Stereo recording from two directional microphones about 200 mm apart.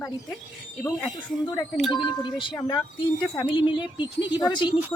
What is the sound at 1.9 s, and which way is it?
A woman's voice, 25° left (ahead or behind).